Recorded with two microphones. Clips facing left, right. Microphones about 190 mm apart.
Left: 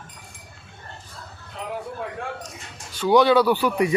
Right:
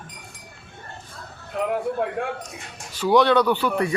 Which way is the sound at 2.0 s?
60° right (ahead or behind).